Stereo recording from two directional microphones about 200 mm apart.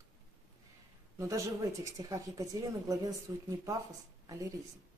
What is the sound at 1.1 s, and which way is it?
A woman's voice, 15° right (ahead or behind).